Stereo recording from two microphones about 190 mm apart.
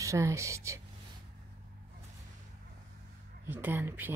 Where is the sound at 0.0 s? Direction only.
15° right (ahead or behind).